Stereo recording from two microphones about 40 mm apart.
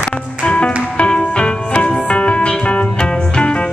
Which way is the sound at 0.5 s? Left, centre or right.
Left.